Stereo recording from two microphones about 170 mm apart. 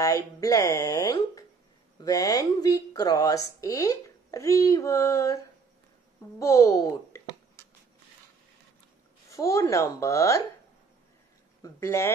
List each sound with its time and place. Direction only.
0.0 s speech: 20° left (ahead or behind)
6.4 s speech: 20° left (ahead or behind)
9.3 s speech: 20° left (ahead or behind)
11.6 s speech: 15° left (ahead or behind)